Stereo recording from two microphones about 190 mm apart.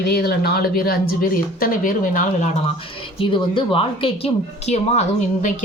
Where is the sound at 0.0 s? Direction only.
60° left (ahead or behind).